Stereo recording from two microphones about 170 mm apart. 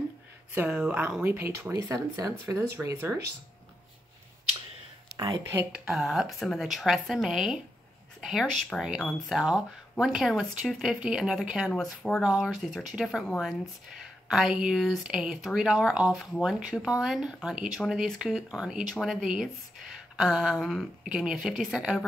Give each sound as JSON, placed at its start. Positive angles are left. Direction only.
{"t": 0.6, "sound": "speech", "side_deg": -5}
{"t": 5.5, "sound": "speech", "side_deg": -15}
{"t": 5.9, "sound": "speech", "side_deg": 0}